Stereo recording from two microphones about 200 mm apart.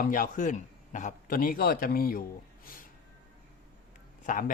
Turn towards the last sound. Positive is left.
turn(degrees=40)  # may be behind; listen again after turning